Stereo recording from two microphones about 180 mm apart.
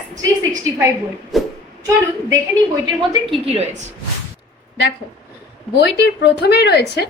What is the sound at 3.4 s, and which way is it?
Speech, 35° right (ahead or behind).